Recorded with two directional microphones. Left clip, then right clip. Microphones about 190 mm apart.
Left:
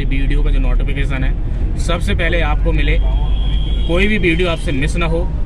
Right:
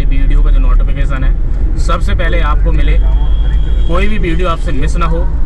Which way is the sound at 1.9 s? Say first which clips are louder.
Right 1 dB; 20° left (ahead or behind).